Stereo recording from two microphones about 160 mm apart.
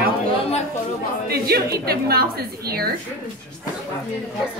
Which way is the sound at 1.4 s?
75° right (ahead or behind).